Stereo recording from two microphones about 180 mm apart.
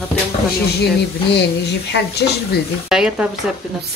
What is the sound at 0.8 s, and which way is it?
Speech, 65° left (ahead or behind).